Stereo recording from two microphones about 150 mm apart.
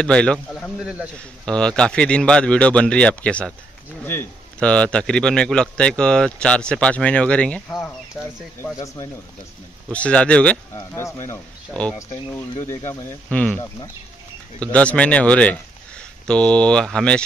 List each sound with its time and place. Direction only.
0.0 s a man's voice: 5° left (ahead or behind)
0.8 s a man's voice: 10° right (ahead or behind)
1.4 s a man's voice: 5° left (ahead or behind)
8.7 s speech: 20° left (ahead or behind)
9.8 s a man's voice: 10° left (ahead or behind)
10.7 s speech: 20° left (ahead or behind)
12.6 s a man's voice: 20° left (ahead or behind)
14.6 s a man's voice: 10° left (ahead or behind)